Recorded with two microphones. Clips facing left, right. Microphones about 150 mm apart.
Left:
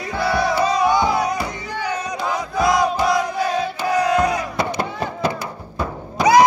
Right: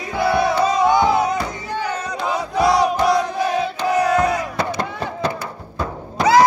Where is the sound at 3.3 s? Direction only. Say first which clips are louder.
Right 1 dB; 20° right (ahead or behind).